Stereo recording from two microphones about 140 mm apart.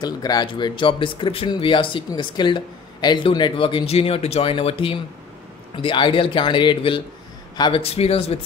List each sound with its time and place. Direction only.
0.0 s speech: 30° left (ahead or behind); by 8.4 s 45° left (ahead or behind)